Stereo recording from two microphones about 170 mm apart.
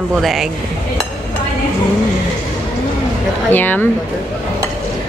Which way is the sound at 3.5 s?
10° left (ahead or behind).